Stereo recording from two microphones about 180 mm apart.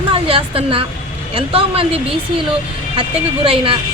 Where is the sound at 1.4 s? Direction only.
30° right (ahead or behind).